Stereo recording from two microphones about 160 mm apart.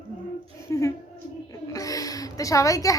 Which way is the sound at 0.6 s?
20° left (ahead or behind).